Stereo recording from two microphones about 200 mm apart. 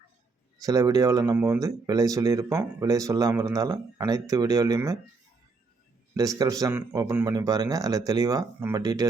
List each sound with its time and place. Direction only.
0.6 s speech: 15° right (ahead or behind)
6.1 s speech: 15° right (ahead or behind)